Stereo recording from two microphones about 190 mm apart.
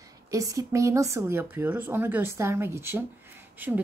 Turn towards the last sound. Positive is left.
turn(degrees=-10)  # may be behind; listen again after turning